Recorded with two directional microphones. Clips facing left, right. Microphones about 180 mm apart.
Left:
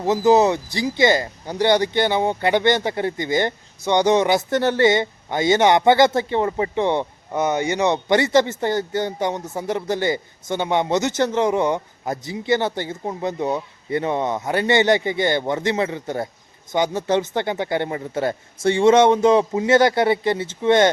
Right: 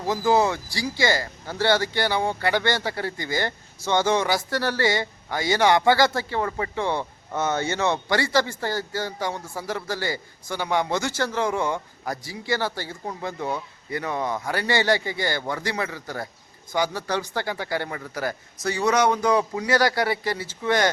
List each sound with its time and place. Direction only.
0.0 s a man's voice: 20° left (ahead or behind)